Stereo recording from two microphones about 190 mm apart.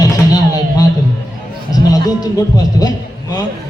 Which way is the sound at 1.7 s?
20° left (ahead or behind).